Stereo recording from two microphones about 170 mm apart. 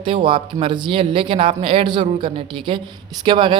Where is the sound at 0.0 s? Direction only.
30° right (ahead or behind).